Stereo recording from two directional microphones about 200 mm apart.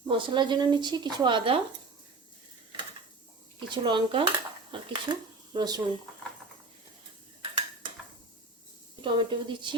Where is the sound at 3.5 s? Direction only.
20° right (ahead or behind).